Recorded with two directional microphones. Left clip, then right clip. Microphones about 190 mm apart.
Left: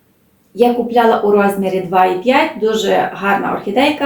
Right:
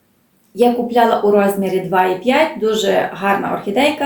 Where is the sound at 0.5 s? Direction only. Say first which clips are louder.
Left 2 dB; 15° right (ahead or behind).